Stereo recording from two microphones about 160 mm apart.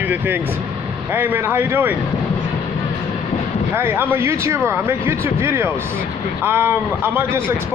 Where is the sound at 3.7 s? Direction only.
15° right (ahead or behind).